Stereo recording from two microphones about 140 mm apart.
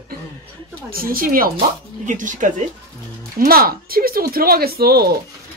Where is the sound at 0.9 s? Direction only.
90° right.